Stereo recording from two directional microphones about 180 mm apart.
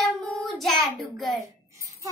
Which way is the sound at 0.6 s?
Centre (ahead or behind).